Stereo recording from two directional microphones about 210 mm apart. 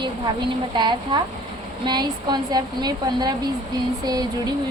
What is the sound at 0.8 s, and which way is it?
Speech, 20° right (ahead or behind).